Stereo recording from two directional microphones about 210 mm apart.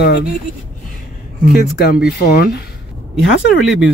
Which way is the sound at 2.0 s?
50° left (ahead or behind).